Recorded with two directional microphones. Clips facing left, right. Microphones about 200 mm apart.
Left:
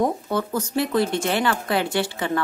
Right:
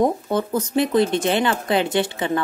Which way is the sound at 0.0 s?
20° right (ahead or behind).